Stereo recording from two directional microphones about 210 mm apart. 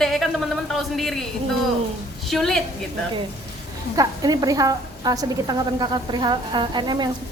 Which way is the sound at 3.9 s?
15° right (ahead or behind).